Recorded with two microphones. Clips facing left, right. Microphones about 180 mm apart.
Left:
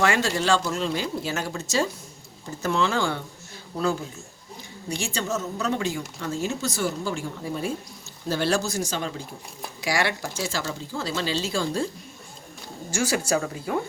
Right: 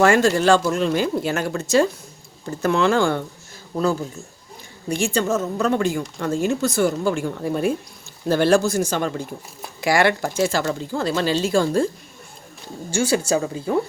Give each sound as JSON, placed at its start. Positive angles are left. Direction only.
{"t": 0.0, "sound": "speech", "side_deg": -45}
{"t": 4.9, "sound": "speech", "side_deg": -55}
{"t": 12.9, "sound": "speech", "side_deg": -30}